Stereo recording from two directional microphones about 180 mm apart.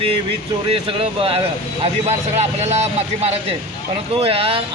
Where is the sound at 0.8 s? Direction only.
30° right (ahead or behind).